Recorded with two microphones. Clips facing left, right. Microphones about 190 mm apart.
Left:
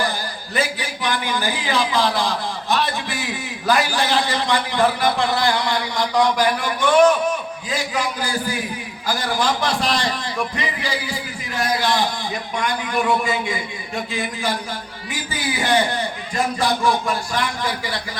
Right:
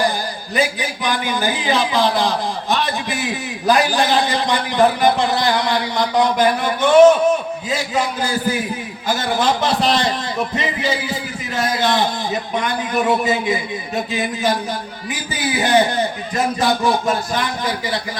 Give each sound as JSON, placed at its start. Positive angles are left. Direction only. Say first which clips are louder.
{"t": 0.5, "sound": "a man's voice", "louder": "right 4 dB", "side_deg": -20}
{"t": 3.7, "sound": "a man's voice", "louder": "right 4 dB", "side_deg": -20}